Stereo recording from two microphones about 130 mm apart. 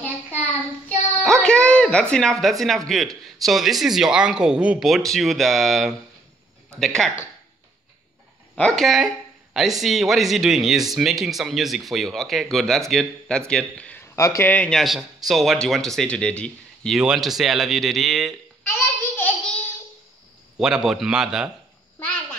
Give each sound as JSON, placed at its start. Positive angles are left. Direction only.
{"t": 0.8, "sound": "a sound", "side_deg": 5}
{"t": 2.9, "sound": "speech", "side_deg": 0}
{"t": 8.5, "sound": "a man's voice", "side_deg": 5}
{"t": 14.1, "sound": "speech", "side_deg": 25}
{"t": 14.5, "sound": "speech", "side_deg": 10}
{"t": 18.7, "sound": "a sound", "side_deg": 15}
{"t": 20.5, "sound": "speech", "side_deg": -5}